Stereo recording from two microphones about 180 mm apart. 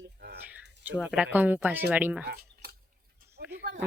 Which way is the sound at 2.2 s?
65° right (ahead or behind).